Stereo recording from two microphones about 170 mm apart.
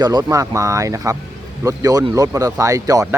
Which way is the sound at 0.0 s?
25° right (ahead or behind).